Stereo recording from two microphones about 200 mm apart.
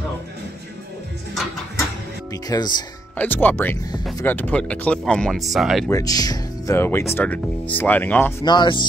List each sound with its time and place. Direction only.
2.3 s speech: 20° left (ahead or behind)
3.2 s speech: 10° left (ahead or behind)
5.9 s speech: 15° left (ahead or behind)
8.5 s speech: 20° left (ahead or behind)